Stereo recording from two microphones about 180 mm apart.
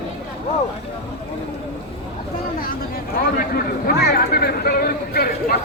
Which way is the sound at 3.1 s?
55° left (ahead or behind).